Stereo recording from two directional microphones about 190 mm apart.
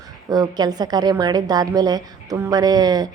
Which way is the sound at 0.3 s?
20° right (ahead or behind).